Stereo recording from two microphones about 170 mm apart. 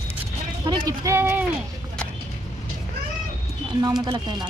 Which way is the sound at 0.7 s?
20° right (ahead or behind).